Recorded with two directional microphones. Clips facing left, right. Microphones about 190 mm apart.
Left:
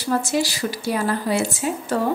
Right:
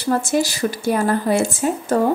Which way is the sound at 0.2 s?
50° right (ahead or behind).